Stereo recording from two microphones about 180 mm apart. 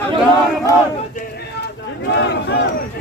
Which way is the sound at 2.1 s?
70° left (ahead or behind).